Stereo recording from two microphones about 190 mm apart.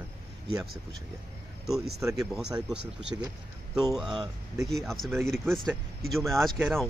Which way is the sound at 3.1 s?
15° right (ahead or behind).